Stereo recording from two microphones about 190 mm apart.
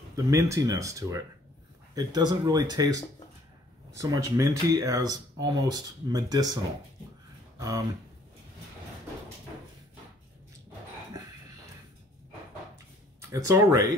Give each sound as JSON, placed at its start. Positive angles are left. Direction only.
{"t": 0.1, "sound": "speech", "side_deg": -15}
{"t": 4.0, "sound": "speech", "side_deg": -15}
{"t": 13.3, "sound": "speech", "side_deg": -15}